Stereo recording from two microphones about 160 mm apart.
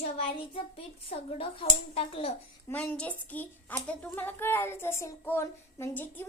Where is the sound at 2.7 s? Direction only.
10° left (ahead or behind).